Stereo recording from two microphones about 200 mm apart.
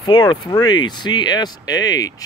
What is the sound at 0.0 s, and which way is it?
Speech, 20° left (ahead or behind).